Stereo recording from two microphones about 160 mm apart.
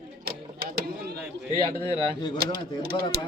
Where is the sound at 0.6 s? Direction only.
90° right.